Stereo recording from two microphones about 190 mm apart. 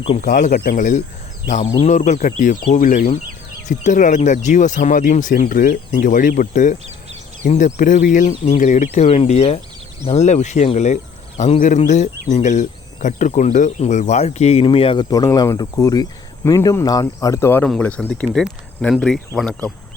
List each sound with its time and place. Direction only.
0.2 s speech: 40° left (ahead or behind); by 19.7 s 5° left (ahead or behind)